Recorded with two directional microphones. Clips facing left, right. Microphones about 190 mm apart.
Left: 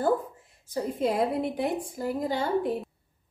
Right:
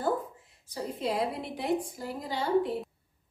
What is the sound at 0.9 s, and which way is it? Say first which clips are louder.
A woman's voice: left 5 dB; 50° left (ahead or behind).